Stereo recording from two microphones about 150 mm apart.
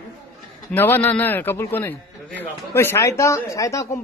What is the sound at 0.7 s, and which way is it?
A man's voice, 10° left (ahead or behind).